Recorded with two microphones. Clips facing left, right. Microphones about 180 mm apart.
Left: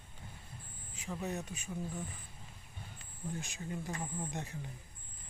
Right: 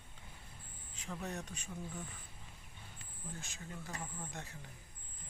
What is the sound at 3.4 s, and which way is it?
Speech, 15° left (ahead or behind).